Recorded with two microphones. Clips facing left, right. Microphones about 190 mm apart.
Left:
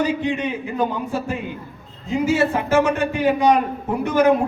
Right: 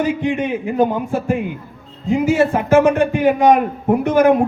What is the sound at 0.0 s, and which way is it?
A man's voice, 50° right (ahead or behind).